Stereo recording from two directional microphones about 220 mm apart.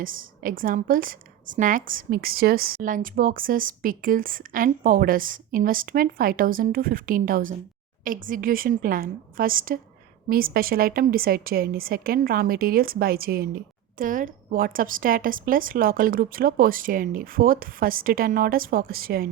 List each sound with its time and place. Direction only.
0.0 s a woman's voice: 40° right (ahead or behind)